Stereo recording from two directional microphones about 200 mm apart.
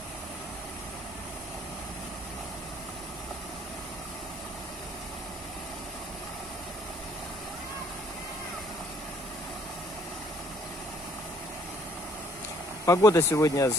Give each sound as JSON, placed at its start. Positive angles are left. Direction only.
{"t": 12.8, "sound": "speech", "side_deg": 15}